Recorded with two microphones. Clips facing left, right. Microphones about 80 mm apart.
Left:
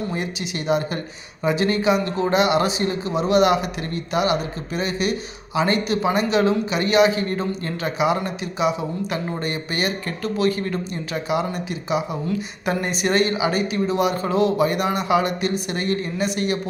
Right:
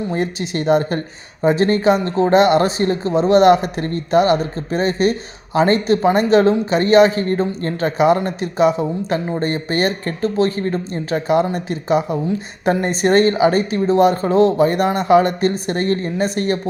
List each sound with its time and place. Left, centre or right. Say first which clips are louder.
0.1 s speech: right 6 dB; right